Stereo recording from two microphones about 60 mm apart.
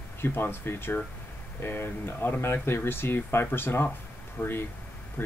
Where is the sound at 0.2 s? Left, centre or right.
Left.